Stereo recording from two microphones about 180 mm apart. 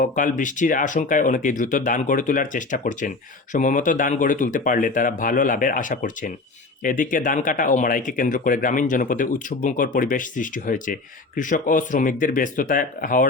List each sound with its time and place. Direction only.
0.0 s speech: 45° left (ahead or behind)